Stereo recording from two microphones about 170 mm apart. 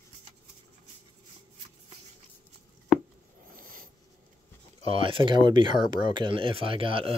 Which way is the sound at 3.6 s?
55° right (ahead or behind).